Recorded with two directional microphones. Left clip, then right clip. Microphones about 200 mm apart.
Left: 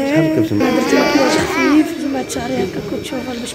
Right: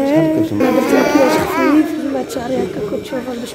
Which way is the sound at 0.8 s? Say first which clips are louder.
Right 1 dB; 55° right (ahead or behind).